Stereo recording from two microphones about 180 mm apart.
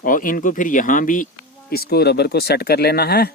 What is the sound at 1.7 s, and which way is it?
Speech, 60° left (ahead or behind).